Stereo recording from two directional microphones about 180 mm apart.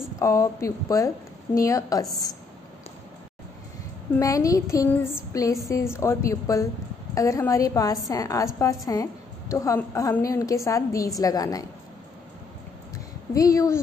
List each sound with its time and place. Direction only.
0.2 s a woman's voice: 15° left (ahead or behind)
4.2 s a woman's voice: 20° left (ahead or behind)
13.3 s a woman's voice: 20° left (ahead or behind)